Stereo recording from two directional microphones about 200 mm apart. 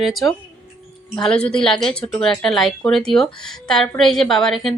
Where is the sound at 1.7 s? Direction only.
25° left (ahead or behind).